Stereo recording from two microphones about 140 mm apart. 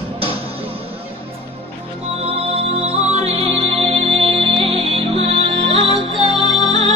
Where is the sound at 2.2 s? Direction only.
45° right (ahead or behind).